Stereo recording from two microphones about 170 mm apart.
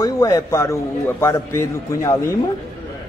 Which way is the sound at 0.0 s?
20° left (ahead or behind).